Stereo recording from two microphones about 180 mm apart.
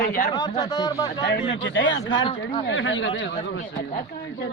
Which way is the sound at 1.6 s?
85° left.